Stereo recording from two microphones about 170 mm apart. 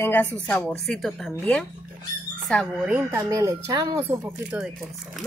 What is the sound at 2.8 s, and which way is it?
Speech, 10° right (ahead or behind).